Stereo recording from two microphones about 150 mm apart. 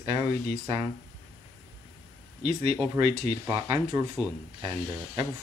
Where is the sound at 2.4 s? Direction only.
45° right (ahead or behind).